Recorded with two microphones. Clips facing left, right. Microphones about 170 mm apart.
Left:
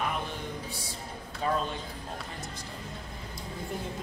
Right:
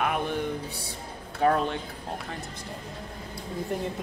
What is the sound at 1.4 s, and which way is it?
Speech, 60° right (ahead or behind).